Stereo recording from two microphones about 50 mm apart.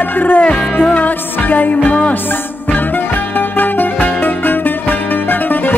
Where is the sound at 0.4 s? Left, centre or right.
Left.